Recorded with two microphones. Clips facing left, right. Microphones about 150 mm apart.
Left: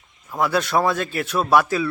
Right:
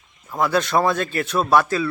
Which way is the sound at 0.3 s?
5° left (ahead or behind).